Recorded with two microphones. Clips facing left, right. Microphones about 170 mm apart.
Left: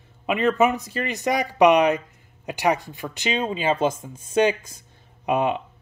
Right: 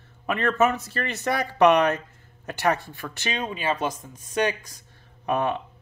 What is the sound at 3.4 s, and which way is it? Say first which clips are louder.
Speech: left 5 dB; 25° left (ahead or behind).